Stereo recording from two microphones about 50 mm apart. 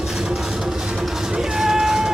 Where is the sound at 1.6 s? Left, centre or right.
Centre.